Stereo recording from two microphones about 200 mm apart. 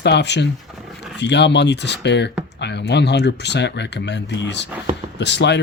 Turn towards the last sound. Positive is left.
turn(degrees=60)  # may be behind; listen again after turning